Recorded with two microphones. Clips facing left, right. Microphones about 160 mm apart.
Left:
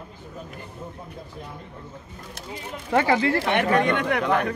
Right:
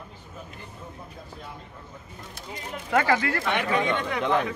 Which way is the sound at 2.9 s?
25° left (ahead or behind).